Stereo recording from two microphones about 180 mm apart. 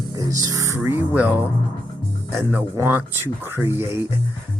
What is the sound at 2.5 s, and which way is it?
Speech, 10° right (ahead or behind).